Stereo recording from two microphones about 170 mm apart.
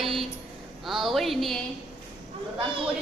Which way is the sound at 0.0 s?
Centre (ahead or behind).